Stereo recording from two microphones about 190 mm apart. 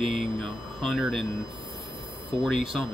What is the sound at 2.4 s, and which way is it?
Speech, centre (ahead or behind).